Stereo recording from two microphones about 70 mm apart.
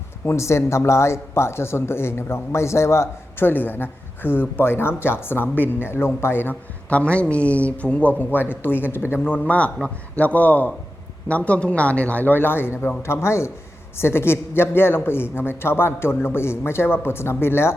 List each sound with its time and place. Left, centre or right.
0.3 s speech: left
6.9 s speech: centre; by 9.4 s left
9.4 s speech: centre; by 17.7 s left